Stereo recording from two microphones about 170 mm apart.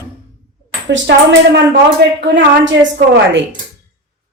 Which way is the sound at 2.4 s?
90° right.